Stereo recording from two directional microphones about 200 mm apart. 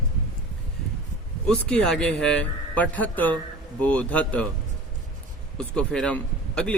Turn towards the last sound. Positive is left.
turn(degrees=5)  # may be behind; listen again after turning